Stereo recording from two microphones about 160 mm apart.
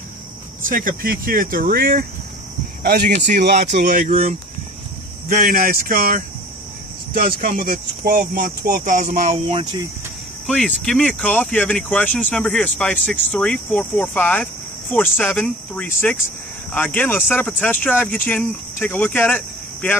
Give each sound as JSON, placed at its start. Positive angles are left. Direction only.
{"t": 0.7, "sound": "speech", "side_deg": -60}
{"t": 2.8, "sound": "speech", "side_deg": -55}
{"t": 3.3, "sound": "speech", "side_deg": -90}
{"t": 3.5, "sound": "speech", "side_deg": -45}
{"t": 10.4, "sound": "speech", "side_deg": 0}